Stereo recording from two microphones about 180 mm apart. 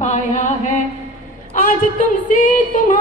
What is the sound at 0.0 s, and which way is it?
Music, 40° left (ahead or behind).